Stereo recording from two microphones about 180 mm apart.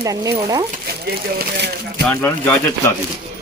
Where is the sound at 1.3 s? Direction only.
65° right (ahead or behind).